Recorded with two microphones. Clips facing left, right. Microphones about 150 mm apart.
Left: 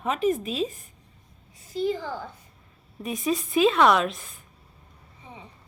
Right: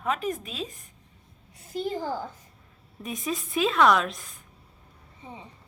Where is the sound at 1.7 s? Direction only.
45° right (ahead or behind).